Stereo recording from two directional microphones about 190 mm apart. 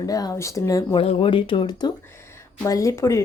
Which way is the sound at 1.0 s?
30° left (ahead or behind).